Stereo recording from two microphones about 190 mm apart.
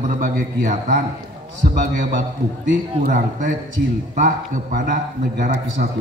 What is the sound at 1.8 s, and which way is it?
A man's voice, 40° right (ahead or behind).